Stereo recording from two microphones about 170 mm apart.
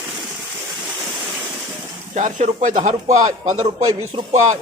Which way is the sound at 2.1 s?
45° right (ahead or behind).